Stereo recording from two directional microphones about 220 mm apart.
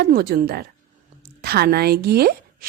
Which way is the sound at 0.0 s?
45° right (ahead or behind).